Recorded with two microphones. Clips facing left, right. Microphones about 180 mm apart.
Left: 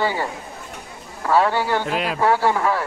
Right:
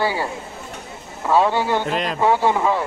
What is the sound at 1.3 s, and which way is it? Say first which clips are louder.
Speech: right 1 dB; 15° right (ahead or behind).